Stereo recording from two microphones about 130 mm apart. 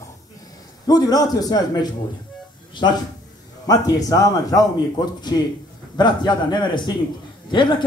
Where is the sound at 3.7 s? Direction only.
30° left (ahead or behind).